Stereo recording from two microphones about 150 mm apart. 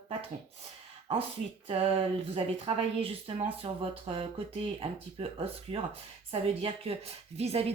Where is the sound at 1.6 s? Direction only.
40° right (ahead or behind).